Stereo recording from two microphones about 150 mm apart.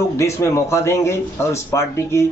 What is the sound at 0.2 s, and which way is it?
Speech, 20° left (ahead or behind).